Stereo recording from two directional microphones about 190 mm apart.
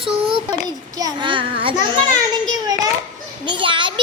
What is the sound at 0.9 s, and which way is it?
Speech, 20° right (ahead or behind).